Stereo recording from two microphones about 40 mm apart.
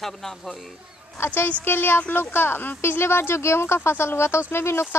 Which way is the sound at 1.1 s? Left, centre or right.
Left.